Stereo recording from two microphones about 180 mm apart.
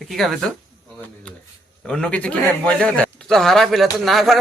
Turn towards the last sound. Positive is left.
turn(degrees=0)  # may be behind; listen again after turning